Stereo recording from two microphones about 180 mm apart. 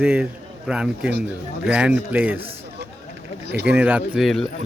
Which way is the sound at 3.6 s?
5° right (ahead or behind).